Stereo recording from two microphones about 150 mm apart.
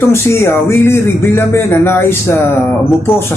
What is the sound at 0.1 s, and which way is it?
Speech, 15° left (ahead or behind).